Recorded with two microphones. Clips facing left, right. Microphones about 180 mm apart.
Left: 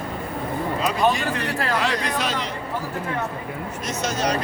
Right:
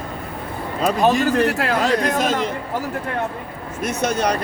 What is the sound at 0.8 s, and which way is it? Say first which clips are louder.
Speech: right 6 dB; 45° right (ahead or behind).